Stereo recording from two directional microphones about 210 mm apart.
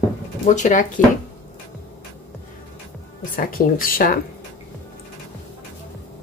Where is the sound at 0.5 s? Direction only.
35° left (ahead or behind).